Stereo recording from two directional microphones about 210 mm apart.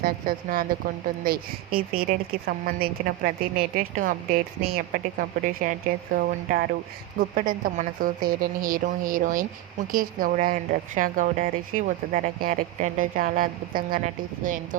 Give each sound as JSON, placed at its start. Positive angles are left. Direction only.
{"t": 0.0, "sound": "a woman's voice", "side_deg": -45}